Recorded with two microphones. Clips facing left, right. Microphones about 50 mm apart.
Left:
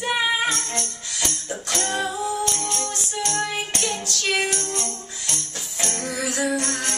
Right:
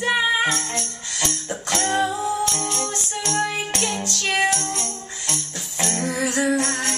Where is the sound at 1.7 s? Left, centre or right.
Centre.